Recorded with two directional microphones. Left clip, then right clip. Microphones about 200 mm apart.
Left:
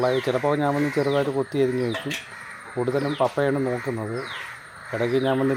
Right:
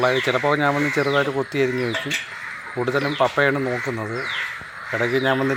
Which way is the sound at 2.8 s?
10° left (ahead or behind).